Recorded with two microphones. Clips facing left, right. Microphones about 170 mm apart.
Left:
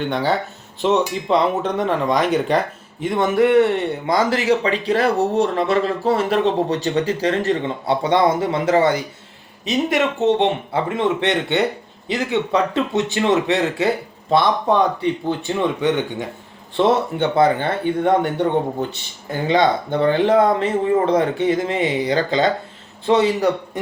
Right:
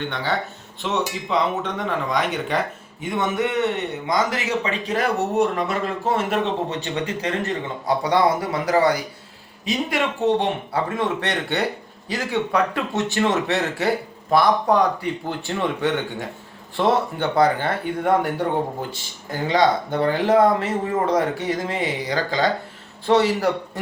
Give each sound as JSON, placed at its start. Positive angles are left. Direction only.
{"t": 0.8, "sound": "speech", "side_deg": 35}
{"t": 19.3, "sound": "speech", "side_deg": 25}